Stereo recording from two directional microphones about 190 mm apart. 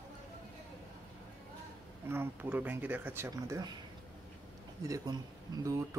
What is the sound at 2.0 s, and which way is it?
Speech, 10° right (ahead or behind).